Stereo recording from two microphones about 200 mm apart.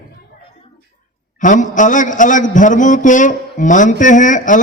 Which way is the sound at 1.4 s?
40° left (ahead or behind).